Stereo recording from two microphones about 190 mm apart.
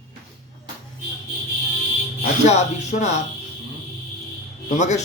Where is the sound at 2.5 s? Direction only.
35° left (ahead or behind).